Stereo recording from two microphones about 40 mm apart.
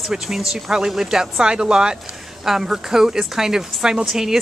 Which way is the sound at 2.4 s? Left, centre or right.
Centre.